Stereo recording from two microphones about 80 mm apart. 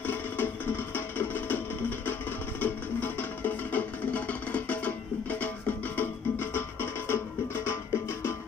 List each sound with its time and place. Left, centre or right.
0.0 s music: left